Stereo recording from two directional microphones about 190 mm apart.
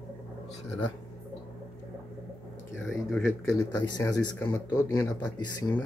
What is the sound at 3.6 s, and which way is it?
Speech, 20° left (ahead or behind).